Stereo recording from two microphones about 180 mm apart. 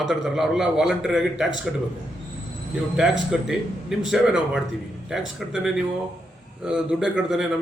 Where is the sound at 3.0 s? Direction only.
5° right (ahead or behind).